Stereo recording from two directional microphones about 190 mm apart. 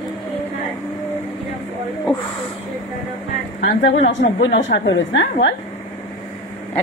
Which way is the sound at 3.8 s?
70° left (ahead or behind).